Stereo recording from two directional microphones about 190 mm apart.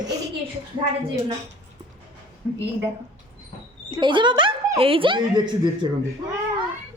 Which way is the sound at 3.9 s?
25° right (ahead or behind).